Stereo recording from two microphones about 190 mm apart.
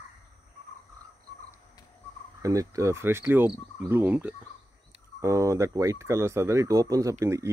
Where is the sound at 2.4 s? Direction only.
15° right (ahead or behind).